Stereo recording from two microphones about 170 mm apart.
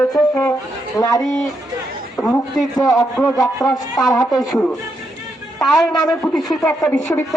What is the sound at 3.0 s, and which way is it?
Speech, 20° left (ahead or behind).